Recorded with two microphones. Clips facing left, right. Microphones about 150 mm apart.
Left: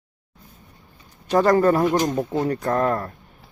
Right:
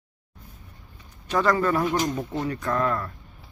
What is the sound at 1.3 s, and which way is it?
Speech, 45° left (ahead or behind).